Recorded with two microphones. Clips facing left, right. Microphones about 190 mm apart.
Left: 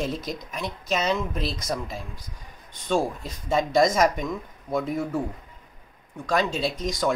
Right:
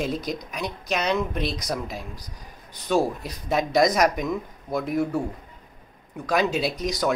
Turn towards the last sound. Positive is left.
turn(degrees=0)  # may be behind; listen again after turning